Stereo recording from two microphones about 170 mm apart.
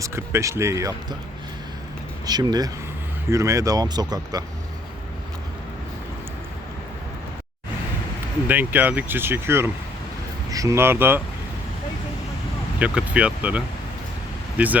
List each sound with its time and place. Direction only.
0.0 s speech: 15° right (ahead or behind)
2.2 s speech: 25° right (ahead or behind)
8.4 s speech: 10° right (ahead or behind)
12.8 s speech: 5° right (ahead or behind)
14.6 s speech: 10° right (ahead or behind)